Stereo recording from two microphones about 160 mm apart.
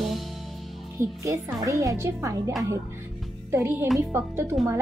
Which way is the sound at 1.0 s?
20° right (ahead or behind).